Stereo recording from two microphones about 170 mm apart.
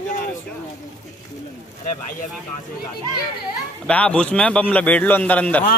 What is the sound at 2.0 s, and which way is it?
Speech, 50° left (ahead or behind).